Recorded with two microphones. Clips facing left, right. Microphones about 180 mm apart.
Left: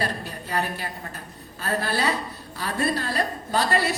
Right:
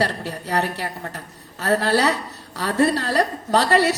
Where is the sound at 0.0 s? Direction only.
80° right.